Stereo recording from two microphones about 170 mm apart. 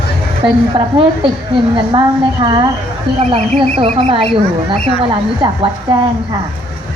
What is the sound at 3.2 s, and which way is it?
Speech, 40° right (ahead or behind).